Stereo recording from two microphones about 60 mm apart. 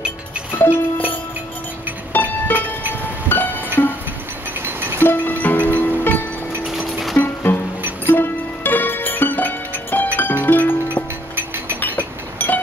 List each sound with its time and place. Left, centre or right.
0.6 s music: left
4.6 s music: right
5.0 s music: left
11.3 s chink: right
12.4 s a sound: left